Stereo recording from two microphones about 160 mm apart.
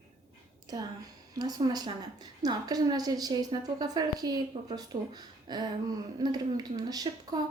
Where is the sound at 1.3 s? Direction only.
25° right (ahead or behind).